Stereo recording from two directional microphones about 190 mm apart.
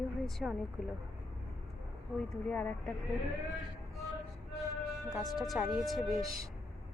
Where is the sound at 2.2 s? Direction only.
5° left (ahead or behind).